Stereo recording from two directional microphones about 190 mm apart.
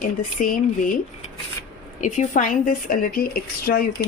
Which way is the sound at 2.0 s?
40° left (ahead or behind).